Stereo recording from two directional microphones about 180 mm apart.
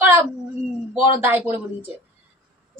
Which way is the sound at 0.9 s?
10° right (ahead or behind).